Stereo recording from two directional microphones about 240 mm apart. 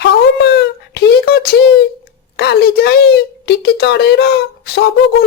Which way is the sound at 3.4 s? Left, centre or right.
Left.